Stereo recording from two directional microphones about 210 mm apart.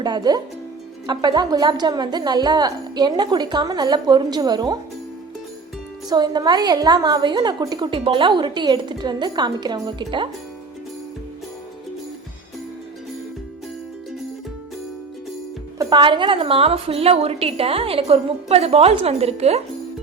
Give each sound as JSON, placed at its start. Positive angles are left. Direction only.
{"t": 0.0, "sound": "a woman's voice", "side_deg": -20}
{"t": 6.1, "sound": "a woman's voice", "side_deg": -20}
{"t": 15.8, "sound": "a woman's voice", "side_deg": -20}